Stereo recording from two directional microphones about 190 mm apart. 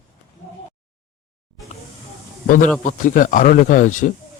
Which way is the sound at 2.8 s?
45° left (ahead or behind).